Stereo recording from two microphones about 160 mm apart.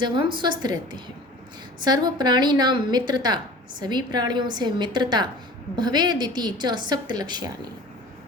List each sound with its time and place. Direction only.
0.0 s a woman's voice: 30° right (ahead or behind)